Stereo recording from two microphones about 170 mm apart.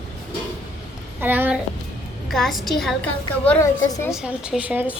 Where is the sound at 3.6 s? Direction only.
20° left (ahead or behind).